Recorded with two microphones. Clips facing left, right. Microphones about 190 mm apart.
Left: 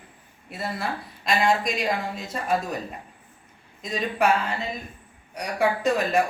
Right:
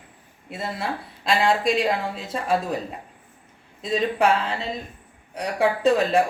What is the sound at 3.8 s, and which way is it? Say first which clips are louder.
Speech: right 3 dB; 30° right (ahead or behind).